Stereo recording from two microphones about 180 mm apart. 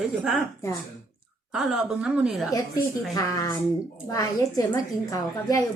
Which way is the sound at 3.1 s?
20° left (ahead or behind).